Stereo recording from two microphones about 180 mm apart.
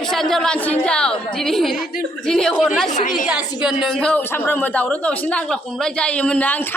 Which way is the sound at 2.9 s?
45° left (ahead or behind).